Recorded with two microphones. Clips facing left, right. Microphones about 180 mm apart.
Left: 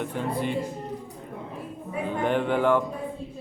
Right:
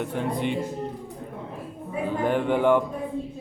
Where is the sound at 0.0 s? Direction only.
15° right (ahead or behind).